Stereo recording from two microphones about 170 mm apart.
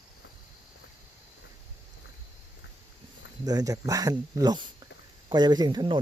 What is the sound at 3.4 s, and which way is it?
Speech, 20° right (ahead or behind).